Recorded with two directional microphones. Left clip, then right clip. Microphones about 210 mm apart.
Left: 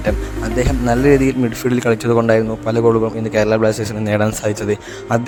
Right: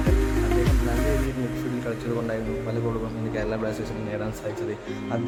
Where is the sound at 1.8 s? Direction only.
50° left (ahead or behind).